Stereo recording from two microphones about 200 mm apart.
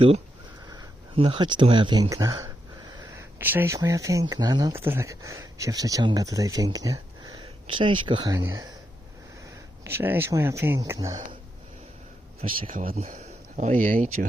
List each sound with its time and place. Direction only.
0.7 s speech: 25° right (ahead or behind)
9.8 s speech: 10° right (ahead or behind)
12.6 s speech: 45° right (ahead or behind)